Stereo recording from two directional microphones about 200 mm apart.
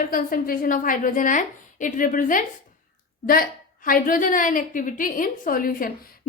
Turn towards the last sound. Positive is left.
turn(degrees=45)  # may be behind; listen again after turning